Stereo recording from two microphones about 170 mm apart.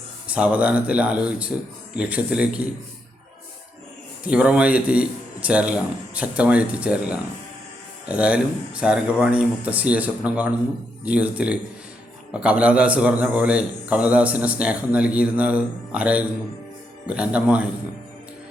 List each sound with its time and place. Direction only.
0.3 s a man's voice: 5° right (ahead or behind)
4.2 s a man's voice: 5° right (ahead or behind)